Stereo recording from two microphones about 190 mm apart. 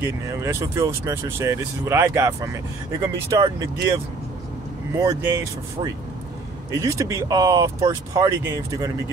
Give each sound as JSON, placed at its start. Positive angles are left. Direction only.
{"t": 0.0, "sound": "speech", "side_deg": -15}
{"t": 4.9, "sound": "speech", "side_deg": -15}